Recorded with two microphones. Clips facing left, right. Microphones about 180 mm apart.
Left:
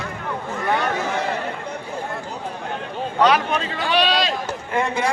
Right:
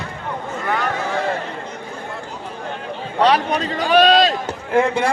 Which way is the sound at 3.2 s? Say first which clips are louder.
Right 2 dB; 35° right (ahead or behind).